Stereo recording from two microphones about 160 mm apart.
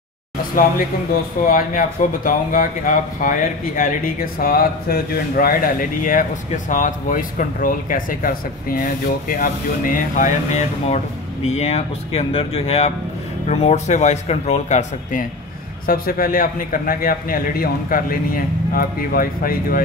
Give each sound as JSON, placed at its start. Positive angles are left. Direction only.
{"t": 1.4, "sound": "speech", "side_deg": 55}
{"t": 11.4, "sound": "speech", "side_deg": 40}
{"t": 15.9, "sound": "speech", "side_deg": 65}